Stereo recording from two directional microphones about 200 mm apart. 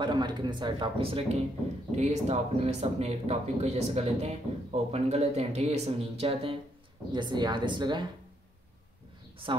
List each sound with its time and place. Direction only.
0.0 s speech: 20° right (ahead or behind)